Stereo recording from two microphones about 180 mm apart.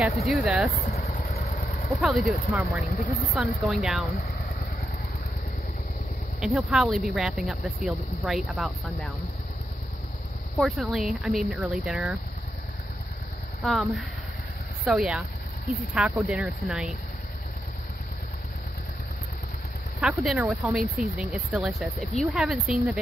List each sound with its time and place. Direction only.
0.3 s speech: centre (ahead or behind)
0.7 s vehicle: 40° left (ahead or behind)
2.0 s speech: centre (ahead or behind)
2.9 s speech: 45° left (ahead or behind)
3.3 s speech: centre (ahead or behind)
4.2 s vehicle: 60° left (ahead or behind)
6.4 s speech: 5° right (ahead or behind)
10.6 s speech: centre (ahead or behind)
13.7 s speech: centre (ahead or behind)
20.0 s speech: 5° right (ahead or behind)